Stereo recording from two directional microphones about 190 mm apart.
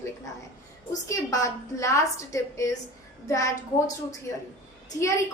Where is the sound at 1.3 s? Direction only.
15° left (ahead or behind).